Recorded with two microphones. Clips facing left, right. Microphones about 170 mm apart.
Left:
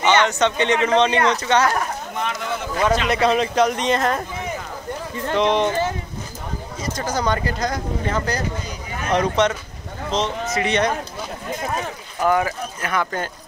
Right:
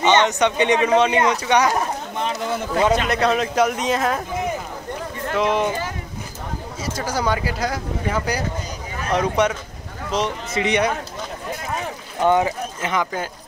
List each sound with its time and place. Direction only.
0.0 s speech: 20° right (ahead or behind)
2.2 s speech: 30° right (ahead or behind)
3.1 s speech: centre (ahead or behind)
5.3 s speech: 5° right (ahead or behind)
6.8 s speech: 5° right (ahead or behind)
12.2 s speech: 20° right (ahead or behind)
13.0 s speech: 5° right (ahead or behind)